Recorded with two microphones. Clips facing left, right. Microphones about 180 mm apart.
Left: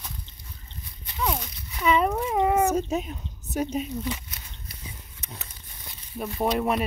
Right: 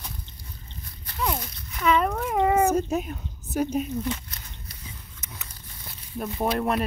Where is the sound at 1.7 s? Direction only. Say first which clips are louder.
Even; 5° left (ahead or behind).